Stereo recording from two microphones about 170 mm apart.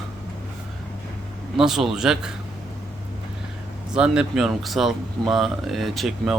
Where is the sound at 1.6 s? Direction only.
5° right (ahead or behind).